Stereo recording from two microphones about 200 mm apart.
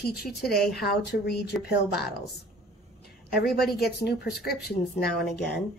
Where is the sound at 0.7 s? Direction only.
50° left (ahead or behind).